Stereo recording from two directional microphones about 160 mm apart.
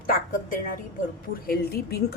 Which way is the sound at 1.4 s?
75° left (ahead or behind).